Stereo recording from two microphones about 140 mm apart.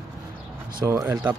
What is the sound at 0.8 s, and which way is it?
Speech, 20° right (ahead or behind).